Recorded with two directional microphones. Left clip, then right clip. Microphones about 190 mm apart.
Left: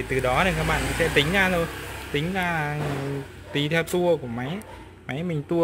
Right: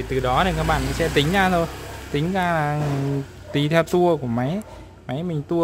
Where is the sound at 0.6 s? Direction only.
25° right (ahead or behind).